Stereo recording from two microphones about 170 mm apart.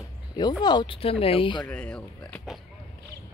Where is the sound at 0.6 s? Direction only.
25° left (ahead or behind).